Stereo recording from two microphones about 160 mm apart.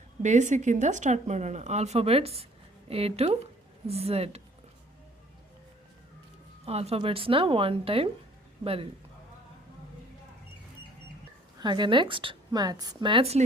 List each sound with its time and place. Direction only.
0.2 s a woman's voice: 50° right (ahead or behind)
6.7 s a woman's voice: 40° right (ahead or behind)
11.6 s a woman's voice: 30° right (ahead or behind)